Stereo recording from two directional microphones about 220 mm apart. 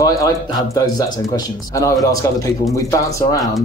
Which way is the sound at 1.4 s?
15° left (ahead or behind).